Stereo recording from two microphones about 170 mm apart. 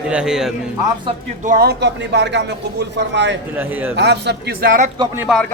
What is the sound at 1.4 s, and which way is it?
Speech, 55° right (ahead or behind).